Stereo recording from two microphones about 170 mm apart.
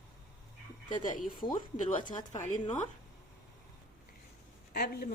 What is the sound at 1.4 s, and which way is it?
Speech, 50° left (ahead or behind).